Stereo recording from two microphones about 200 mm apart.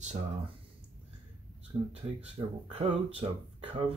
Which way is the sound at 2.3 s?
30° right (ahead or behind).